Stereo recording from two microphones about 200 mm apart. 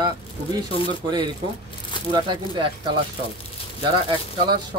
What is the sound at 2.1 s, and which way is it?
Speech, 25° right (ahead or behind).